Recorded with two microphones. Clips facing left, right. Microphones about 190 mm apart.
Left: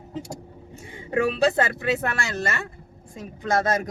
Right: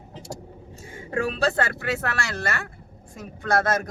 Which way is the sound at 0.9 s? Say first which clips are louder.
Left 3 dB; 20° left (ahead or behind).